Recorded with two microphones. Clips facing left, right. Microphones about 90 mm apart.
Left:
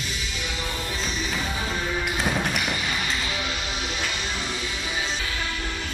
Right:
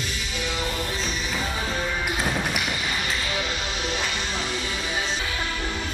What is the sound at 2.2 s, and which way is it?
Music, centre (ahead or behind).